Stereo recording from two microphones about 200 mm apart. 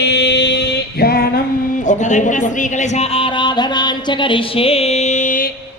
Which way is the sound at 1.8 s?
40° left (ahead or behind).